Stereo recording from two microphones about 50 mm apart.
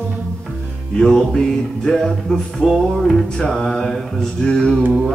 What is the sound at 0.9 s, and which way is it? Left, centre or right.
Mantra, centre.